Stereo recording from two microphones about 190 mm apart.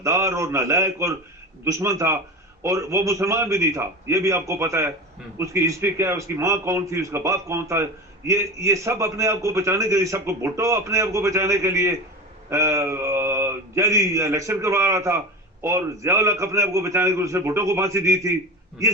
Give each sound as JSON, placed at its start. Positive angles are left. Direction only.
{"t": 0.0, "sound": "a man's voice", "side_deg": -15}